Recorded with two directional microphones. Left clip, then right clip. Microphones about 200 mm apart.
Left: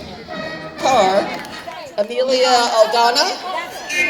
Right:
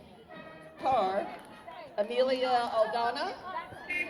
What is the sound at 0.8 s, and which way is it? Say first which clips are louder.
Music: left 14 dB; 50° left (ahead or behind).